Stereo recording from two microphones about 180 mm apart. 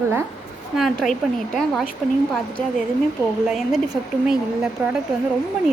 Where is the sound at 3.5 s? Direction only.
Centre (ahead or behind).